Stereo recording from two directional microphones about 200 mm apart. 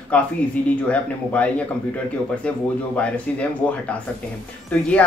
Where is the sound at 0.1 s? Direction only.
5° left (ahead or behind).